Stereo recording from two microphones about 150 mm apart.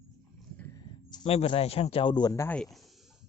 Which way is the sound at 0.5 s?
15° left (ahead or behind).